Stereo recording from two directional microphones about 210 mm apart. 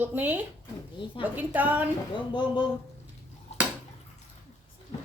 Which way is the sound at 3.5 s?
30° left (ahead or behind).